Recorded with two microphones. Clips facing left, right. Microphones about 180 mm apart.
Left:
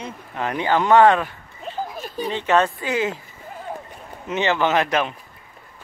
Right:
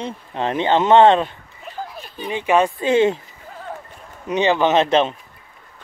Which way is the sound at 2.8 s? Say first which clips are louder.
Right 8 dB; 25° right (ahead or behind).